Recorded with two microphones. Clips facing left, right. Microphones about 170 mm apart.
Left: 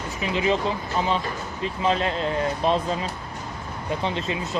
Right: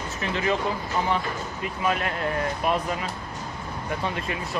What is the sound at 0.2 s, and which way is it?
Speech, 20° left (ahead or behind).